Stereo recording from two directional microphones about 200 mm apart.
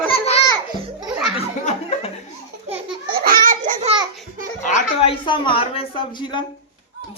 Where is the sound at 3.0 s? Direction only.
45° right (ahead or behind).